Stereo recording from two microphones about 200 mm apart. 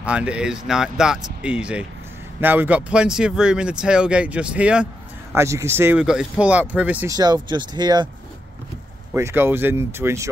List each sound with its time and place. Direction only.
0.0 s speech: 5° right (ahead or behind)
7.2 s speech: 20° right (ahead or behind)
9.1 s speech: 10° right (ahead or behind)